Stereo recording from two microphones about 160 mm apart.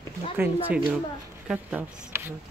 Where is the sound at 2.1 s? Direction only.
15° right (ahead or behind).